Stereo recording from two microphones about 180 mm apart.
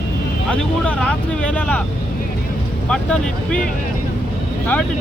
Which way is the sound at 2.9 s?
5° left (ahead or behind).